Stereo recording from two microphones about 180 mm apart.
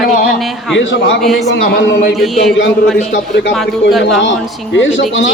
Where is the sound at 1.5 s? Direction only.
70° left (ahead or behind).